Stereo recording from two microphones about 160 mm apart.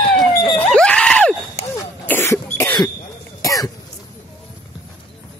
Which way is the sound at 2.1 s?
15° left (ahead or behind).